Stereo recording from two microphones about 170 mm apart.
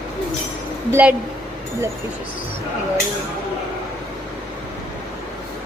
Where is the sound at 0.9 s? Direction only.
10° right (ahead or behind).